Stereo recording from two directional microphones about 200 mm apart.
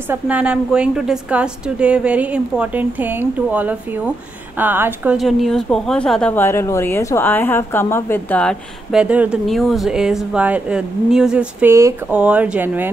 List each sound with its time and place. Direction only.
0.1 s a woman's voice: 5° right (ahead or behind)
9.0 s speech: 5° right (ahead or behind)